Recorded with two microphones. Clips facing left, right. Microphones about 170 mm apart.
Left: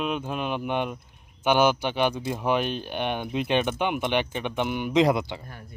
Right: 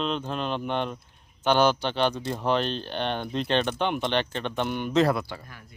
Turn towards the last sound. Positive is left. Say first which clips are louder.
# left 3 dB
turn(degrees=30)  # may be behind; listen again after turning